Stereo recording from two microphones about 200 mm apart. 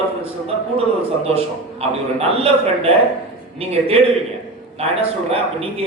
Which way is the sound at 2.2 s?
30° right (ahead or behind).